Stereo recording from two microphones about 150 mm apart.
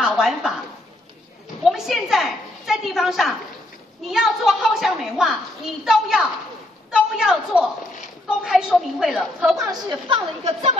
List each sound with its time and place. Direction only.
0.0 s a woman's voice: centre (ahead or behind)
1.6 s a sound: centre (ahead or behind)
4.1 s a woman's voice: centre (ahead or behind)
9.8 s a woman's voice: 30° right (ahead or behind)